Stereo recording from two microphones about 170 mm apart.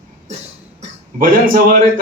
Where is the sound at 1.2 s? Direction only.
55° right (ahead or behind).